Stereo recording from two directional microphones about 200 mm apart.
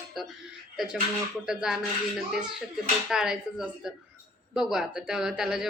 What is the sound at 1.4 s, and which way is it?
Speech, 5° right (ahead or behind).